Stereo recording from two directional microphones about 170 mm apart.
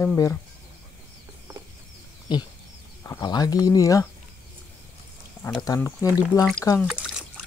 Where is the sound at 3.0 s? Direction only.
20° left (ahead or behind).